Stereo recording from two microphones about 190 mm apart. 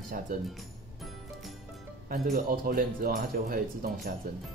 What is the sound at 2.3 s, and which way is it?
Speech, 45° right (ahead or behind).